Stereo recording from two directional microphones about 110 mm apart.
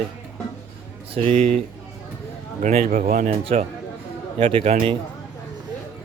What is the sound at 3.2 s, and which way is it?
A man's voice, 60° right (ahead or behind).